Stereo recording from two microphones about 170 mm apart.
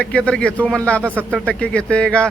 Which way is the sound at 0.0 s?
5° left (ahead or behind).